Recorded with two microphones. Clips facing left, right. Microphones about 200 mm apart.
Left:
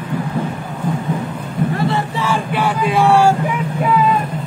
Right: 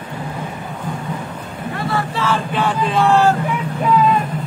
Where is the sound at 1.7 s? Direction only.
25° left (ahead or behind).